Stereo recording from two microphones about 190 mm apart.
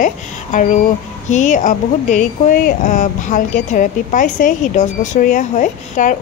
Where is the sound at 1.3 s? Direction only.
40° left (ahead or behind).